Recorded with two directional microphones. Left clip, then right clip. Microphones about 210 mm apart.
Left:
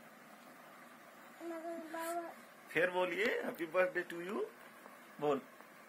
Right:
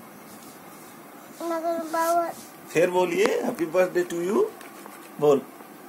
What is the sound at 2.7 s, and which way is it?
Child singing, 15° right (ahead or behind).